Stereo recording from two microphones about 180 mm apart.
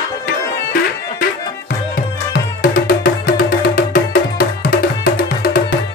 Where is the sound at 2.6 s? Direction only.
50° left (ahead or behind).